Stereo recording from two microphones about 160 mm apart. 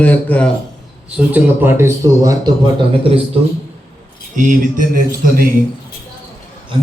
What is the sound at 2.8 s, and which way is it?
Speech, 35° right (ahead or behind).